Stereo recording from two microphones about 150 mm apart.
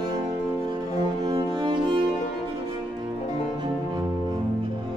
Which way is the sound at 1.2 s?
30° right (ahead or behind).